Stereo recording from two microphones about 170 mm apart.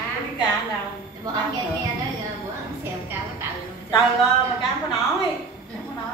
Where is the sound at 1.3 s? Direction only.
20° right (ahead or behind).